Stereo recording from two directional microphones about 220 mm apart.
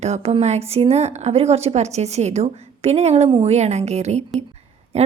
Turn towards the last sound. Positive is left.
turn(degrees=-30)  # may be behind; listen again after turning